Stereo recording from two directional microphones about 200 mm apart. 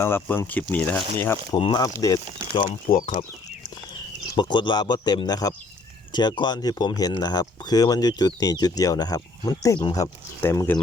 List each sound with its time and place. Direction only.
0.0 s speech: 10° left (ahead or behind)
1.5 s speech: 25° left (ahead or behind)
4.4 s speech: 20° left (ahead or behind)